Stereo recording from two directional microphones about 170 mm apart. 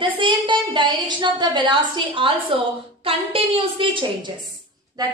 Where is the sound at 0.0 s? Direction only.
30° right (ahead or behind).